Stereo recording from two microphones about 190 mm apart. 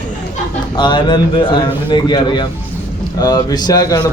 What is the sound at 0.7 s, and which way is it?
A man's voice, 25° left (ahead or behind).